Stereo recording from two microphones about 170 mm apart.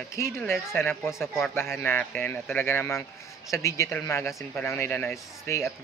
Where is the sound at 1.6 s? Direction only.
10° left (ahead or behind).